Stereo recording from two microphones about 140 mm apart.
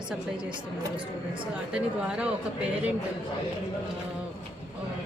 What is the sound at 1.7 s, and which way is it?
Speech, 5° right (ahead or behind).